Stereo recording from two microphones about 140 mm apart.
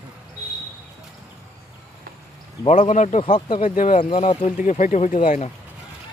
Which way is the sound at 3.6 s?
65° left (ahead or behind).